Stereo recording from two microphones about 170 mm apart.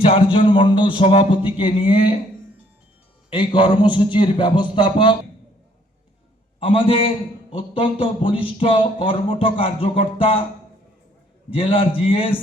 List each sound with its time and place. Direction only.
0.0 s speech: 30° left (ahead or behind)
3.3 s a man's voice: 25° left (ahead or behind)
6.6 s speech: 30° left (ahead or behind)
11.5 s speech: 30° left (ahead or behind)